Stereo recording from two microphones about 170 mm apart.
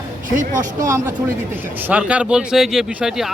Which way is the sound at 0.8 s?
15° right (ahead or behind).